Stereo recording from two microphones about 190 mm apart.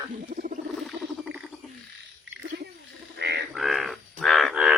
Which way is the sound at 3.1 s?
60° right (ahead or behind).